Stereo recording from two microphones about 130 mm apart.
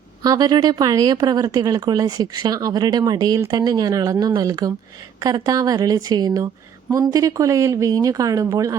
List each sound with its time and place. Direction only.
0.2 s speech: 30° right (ahead or behind)